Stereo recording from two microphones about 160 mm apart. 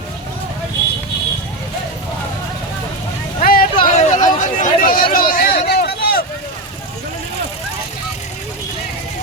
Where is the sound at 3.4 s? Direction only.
65° left (ahead or behind).